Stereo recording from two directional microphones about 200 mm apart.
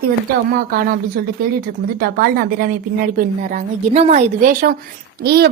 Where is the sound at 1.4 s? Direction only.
45° right (ahead or behind).